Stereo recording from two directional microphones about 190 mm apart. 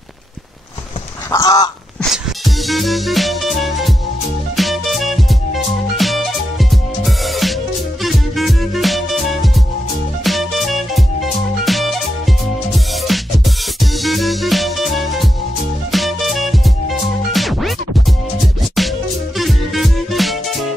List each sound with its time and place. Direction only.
1.3 s fowl: 15° left (ahead or behind)
2.0 s music: centre (ahead or behind)
18.8 s music: centre (ahead or behind)